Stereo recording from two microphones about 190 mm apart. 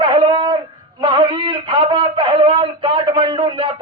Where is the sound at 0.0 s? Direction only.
25° right (ahead or behind).